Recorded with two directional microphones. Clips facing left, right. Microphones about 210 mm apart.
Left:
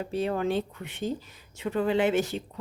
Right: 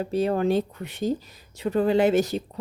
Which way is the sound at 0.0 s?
40° right (ahead or behind).